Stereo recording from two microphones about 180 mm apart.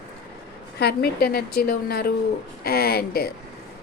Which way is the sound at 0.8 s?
60° left (ahead or behind).